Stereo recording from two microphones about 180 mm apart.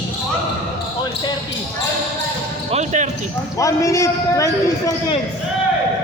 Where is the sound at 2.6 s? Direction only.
40° right (ahead or behind).